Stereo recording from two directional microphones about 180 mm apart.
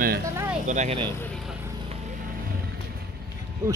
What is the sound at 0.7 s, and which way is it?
Speech, 40° right (ahead or behind).